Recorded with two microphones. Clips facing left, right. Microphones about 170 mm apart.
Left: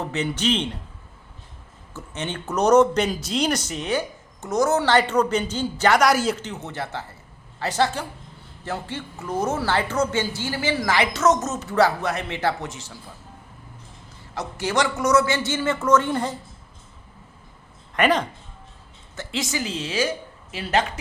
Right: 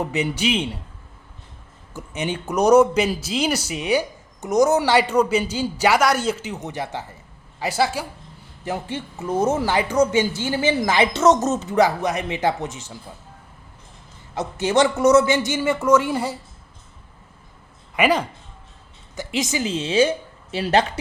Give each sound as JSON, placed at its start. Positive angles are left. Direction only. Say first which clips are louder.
{"t": 0.0, "sound": "speech", "louder": "right 2 dB", "side_deg": -10}
{"t": 1.9, "sound": "a woman's voice", "louder": "right 4 dB", "side_deg": -15}
{"t": 11.6, "sound": "speech", "louder": "right 2 dB", "side_deg": -15}
{"t": 14.3, "sound": "speech", "louder": "right 5 dB", "side_deg": -20}
{"t": 17.9, "sound": "a woman's voice", "louder": "right 1 dB", "side_deg": -10}